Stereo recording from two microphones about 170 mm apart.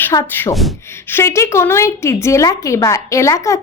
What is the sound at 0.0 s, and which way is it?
A woman's voice, 15° left (ahead or behind).